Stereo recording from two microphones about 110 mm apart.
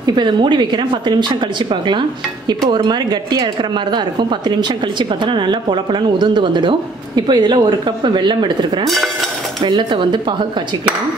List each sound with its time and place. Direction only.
0.0 s a woman's voice: 45° right (ahead or behind)
8.8 s stir: centre (ahead or behind)
9.6 s a woman's voice: 45° right (ahead or behind)